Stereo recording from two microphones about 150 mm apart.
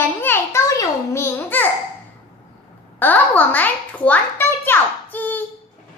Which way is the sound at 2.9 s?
10° left (ahead or behind).